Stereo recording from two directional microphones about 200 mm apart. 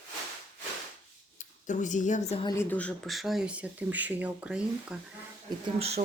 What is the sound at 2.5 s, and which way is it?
Speech, 10° left (ahead or behind).